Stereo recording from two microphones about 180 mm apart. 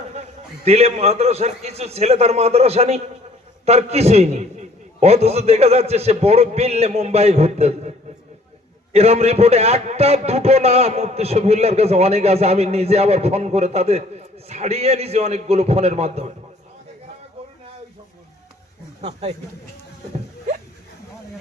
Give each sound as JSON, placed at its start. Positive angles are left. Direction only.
{"t": 0.1, "sound": "a man's voice", "side_deg": -40}